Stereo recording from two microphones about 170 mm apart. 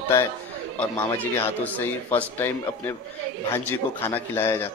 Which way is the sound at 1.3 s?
10° left (ahead or behind).